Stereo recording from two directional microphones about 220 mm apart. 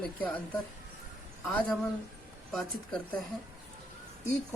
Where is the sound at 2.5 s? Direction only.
Centre (ahead or behind).